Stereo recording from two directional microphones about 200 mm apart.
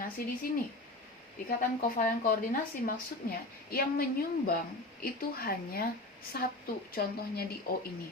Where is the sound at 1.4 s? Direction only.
40° left (ahead or behind).